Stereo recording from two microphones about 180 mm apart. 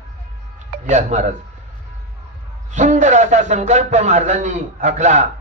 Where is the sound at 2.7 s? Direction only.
40° right (ahead or behind).